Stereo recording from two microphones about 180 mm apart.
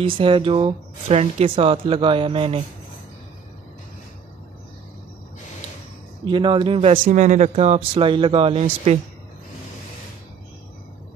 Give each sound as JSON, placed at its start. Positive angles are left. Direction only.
{"t": 0.0, "sound": "speech", "side_deg": -30}
{"t": 6.2, "sound": "speech", "side_deg": -25}
{"t": 7.1, "sound": "speech", "side_deg": -40}